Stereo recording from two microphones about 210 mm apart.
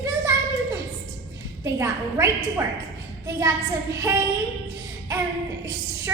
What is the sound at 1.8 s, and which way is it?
Speech, 10° right (ahead or behind).